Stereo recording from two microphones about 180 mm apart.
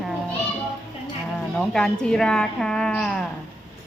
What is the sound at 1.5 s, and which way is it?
Speech, 5° left (ahead or behind).